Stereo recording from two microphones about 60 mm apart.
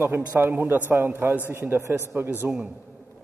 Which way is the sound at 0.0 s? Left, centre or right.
Right.